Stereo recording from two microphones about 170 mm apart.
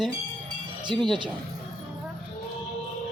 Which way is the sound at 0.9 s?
25° right (ahead or behind).